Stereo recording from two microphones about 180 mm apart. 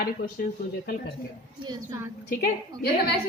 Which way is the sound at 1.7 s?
15° right (ahead or behind).